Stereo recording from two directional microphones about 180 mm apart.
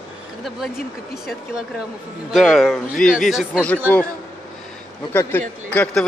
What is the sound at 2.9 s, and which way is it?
Speech, 50° left (ahead or behind).